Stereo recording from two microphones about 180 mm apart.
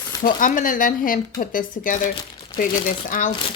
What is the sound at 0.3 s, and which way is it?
Speech, 45° left (ahead or behind).